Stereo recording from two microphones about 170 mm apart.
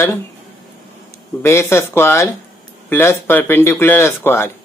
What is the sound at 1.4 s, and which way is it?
Speech, 15° left (ahead or behind).